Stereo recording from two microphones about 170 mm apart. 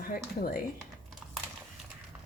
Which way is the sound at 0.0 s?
55° left (ahead or behind).